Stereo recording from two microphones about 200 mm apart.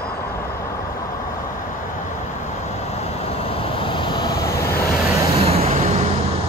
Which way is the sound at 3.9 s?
25° left (ahead or behind).